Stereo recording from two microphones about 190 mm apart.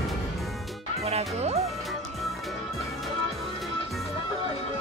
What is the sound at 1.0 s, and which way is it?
Music, 35° right (ahead or behind).